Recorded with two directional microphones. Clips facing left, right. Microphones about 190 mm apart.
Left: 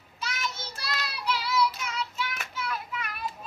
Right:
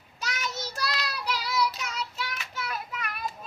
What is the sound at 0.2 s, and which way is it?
Child singing, 40° right (ahead or behind).